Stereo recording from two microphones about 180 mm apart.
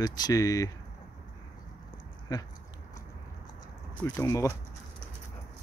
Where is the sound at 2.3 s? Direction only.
20° left (ahead or behind).